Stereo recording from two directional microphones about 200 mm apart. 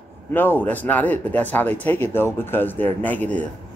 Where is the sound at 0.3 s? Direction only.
10° left (ahead or behind).